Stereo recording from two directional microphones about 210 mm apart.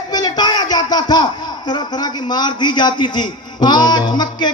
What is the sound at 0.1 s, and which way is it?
Speech, 20° left (ahead or behind).